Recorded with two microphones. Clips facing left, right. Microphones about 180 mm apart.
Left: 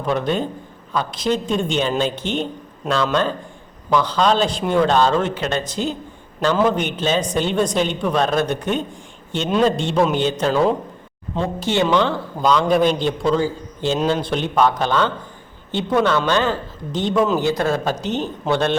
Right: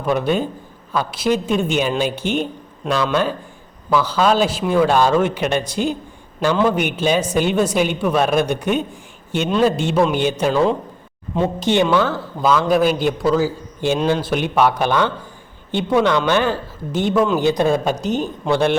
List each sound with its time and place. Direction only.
0.0 s a woman's voice: 10° right (ahead or behind)
10.5 s speech: 5° left (ahead or behind)
11.4 s a woman's voice: 20° right (ahead or behind)